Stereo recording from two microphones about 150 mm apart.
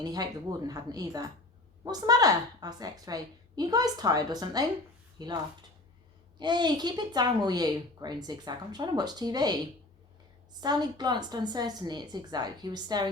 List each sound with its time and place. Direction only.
0.0 s speech: 25° right (ahead or behind)
6.4 s speech: 30° right (ahead or behind)
10.6 s speech: 30° right (ahead or behind)